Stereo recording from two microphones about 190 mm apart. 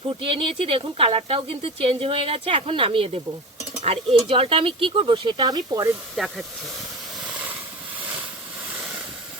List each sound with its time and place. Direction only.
0.2 s speech: 30° right (ahead or behind)
6.1 s speech: centre (ahead or behind)